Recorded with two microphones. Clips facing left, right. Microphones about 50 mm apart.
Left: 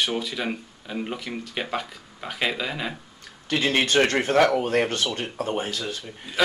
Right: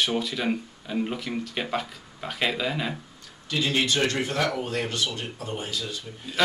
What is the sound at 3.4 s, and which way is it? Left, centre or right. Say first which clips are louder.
Speech: left 3 dB; left.